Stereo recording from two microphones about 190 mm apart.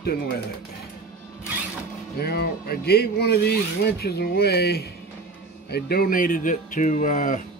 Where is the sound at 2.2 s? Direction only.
55° left (ahead or behind).